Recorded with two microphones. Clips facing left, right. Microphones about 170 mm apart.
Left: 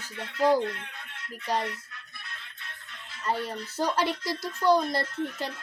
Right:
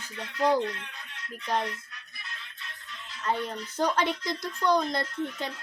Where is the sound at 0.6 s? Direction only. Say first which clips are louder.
Left 1 dB; 55° left (ahead or behind).